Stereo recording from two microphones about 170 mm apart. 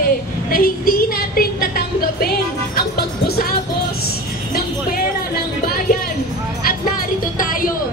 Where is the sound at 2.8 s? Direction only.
65° left (ahead or behind).